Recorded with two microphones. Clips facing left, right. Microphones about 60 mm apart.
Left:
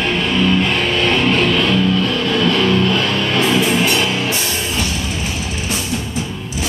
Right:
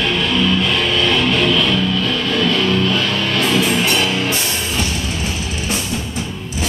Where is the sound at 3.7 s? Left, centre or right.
Centre.